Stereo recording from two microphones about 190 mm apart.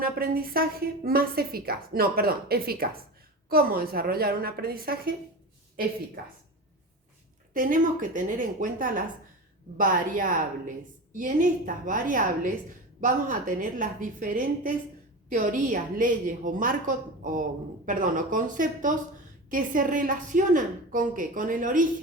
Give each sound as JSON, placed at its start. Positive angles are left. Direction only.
{"t": 0.0, "sound": "a woman's voice", "side_deg": -50}
{"t": 6.2, "sound": "a woman's voice", "side_deg": -50}
{"t": 7.5, "sound": "a woman's voice", "side_deg": -45}